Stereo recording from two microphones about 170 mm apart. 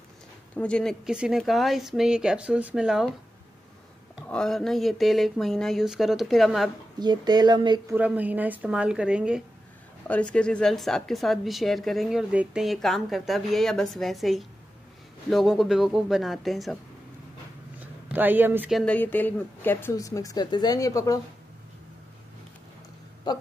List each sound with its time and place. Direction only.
0.6 s a woman's voice: 5° left (ahead or behind)
4.3 s a woman's voice: 5° left (ahead or behind)
7.0 s speech: 25° right (ahead or behind)
7.9 s speech: 10° right (ahead or behind)
10.0 s a woman's voice: 5° left (ahead or behind)
18.0 s speech: 10° right (ahead or behind)
18.7 s a woman's voice: 5° left (ahead or behind); by 21.2 s 20° left (ahead or behind)
23.3 s a woman's voice: 25° left (ahead or behind)